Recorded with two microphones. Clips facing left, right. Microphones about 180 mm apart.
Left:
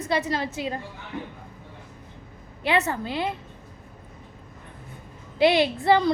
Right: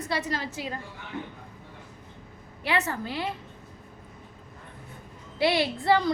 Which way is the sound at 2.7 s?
25° left (ahead or behind).